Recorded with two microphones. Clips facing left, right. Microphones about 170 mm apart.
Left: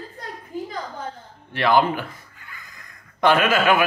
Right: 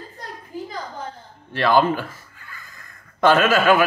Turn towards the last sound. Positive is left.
turn(degrees=15)  # may be behind; listen again after turning